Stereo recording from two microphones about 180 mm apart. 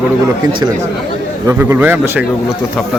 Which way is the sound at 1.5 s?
15° right (ahead or behind).